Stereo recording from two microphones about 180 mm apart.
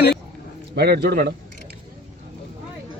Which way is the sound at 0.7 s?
65° right (ahead or behind).